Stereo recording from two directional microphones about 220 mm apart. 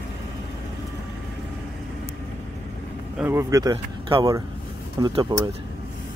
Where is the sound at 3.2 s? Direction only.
10° right (ahead or behind).